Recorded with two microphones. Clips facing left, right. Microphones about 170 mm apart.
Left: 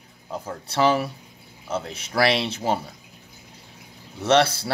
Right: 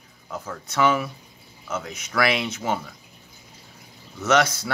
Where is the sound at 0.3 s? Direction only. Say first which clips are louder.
Left 2 dB; 30° left (ahead or behind).